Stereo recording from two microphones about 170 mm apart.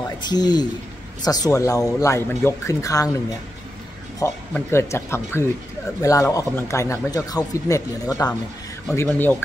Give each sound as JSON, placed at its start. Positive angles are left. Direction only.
{"t": 0.2, "sound": "speech", "side_deg": 25}